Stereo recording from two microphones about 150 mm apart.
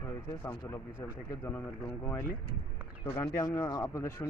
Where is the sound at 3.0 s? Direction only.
20° left (ahead or behind).